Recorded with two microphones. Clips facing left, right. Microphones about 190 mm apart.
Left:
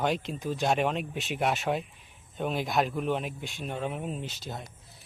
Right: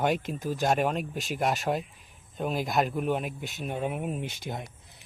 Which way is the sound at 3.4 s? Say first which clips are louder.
Right 1 dB; 45° right (ahead or behind).